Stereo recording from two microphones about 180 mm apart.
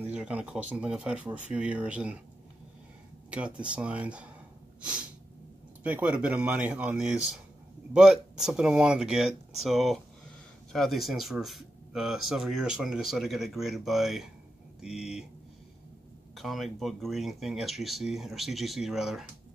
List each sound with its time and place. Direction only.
0.1 s speech: 5° right (ahead or behind)
3.3 s speech: 5° right (ahead or behind)
5.9 s speech: 10° right (ahead or behind)
16.3 s speech: centre (ahead or behind)